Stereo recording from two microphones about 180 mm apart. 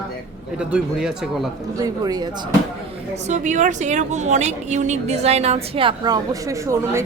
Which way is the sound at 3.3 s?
45° right (ahead or behind).